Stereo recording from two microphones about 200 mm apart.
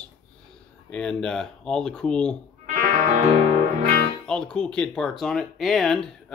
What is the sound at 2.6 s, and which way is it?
Music, 35° right (ahead or behind).